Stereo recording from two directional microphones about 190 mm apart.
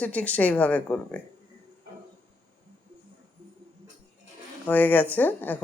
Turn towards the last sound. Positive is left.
turn(degrees=10)  # may be behind; listen again after turning